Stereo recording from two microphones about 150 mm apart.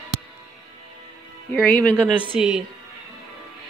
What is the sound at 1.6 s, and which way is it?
Speech, 10° left (ahead or behind).